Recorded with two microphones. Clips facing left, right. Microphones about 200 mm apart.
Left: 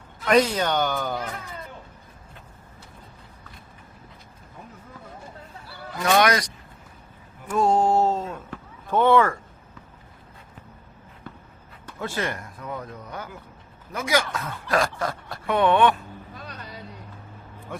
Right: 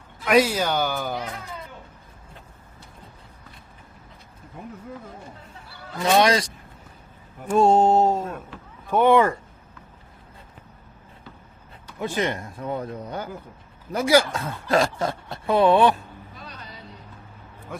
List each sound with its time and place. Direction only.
0.3 s speech: 5° right (ahead or behind)
6.0 s speech: 25° right (ahead or behind)
11.9 s speech: 15° right (ahead or behind); by 16.0 s 35° right (ahead or behind)